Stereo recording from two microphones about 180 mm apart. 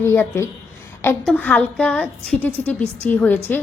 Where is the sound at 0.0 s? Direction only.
15° left (ahead or behind).